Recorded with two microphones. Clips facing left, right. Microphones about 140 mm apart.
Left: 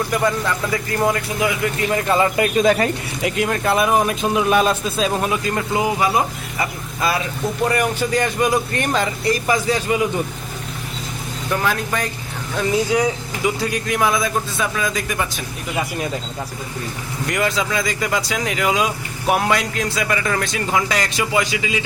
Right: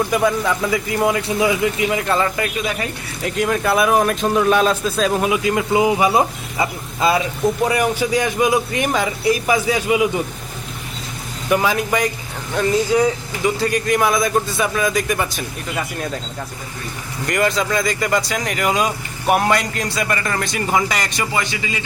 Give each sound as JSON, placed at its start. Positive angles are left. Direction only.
{"t": 0.1, "sound": "a man's voice", "side_deg": -10}
{"t": 2.1, "sound": "speech", "side_deg": 20}
{"t": 2.6, "sound": "speech", "side_deg": 45}
{"t": 3.2, "sound": "a man's voice", "side_deg": 5}
{"t": 5.3, "sound": "a man's voice", "side_deg": -5}
{"t": 5.7, "sound": "speech", "side_deg": -20}
{"t": 7.7, "sound": "a man's voice", "side_deg": -10}
{"t": 11.5, "sound": "a man's voice", "side_deg": -10}
{"t": 13.0, "sound": "a man's voice", "side_deg": 5}
{"t": 17.2, "sound": "a man's voice", "side_deg": 0}